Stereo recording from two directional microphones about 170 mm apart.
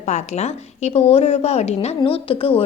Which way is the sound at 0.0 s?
40° left (ahead or behind).